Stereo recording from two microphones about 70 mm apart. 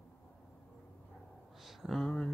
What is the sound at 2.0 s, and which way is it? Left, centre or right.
Speech, centre.